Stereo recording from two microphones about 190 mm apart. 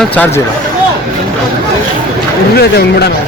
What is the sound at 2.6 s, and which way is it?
Speech, 60° left (ahead or behind).